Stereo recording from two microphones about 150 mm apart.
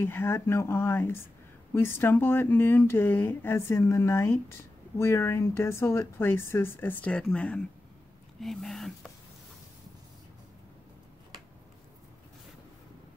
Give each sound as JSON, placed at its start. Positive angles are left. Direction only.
{"t": 0.0, "sound": "speech", "side_deg": 15}